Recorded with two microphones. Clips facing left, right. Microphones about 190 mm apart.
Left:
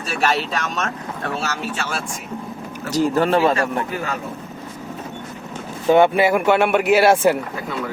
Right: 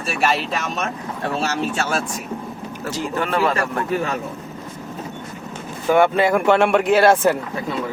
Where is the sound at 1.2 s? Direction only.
35° right (ahead or behind).